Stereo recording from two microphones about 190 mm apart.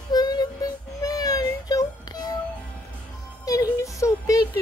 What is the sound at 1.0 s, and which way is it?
Music, 20° left (ahead or behind).